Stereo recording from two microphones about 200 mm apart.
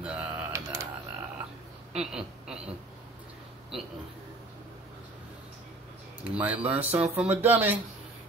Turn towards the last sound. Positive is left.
turn(degrees=-10)  # may be behind; listen again after turning